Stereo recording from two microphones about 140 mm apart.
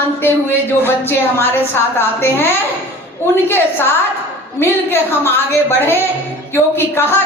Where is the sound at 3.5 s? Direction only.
15° left (ahead or behind).